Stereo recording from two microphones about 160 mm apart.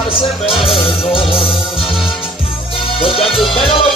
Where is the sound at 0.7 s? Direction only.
35° left (ahead or behind).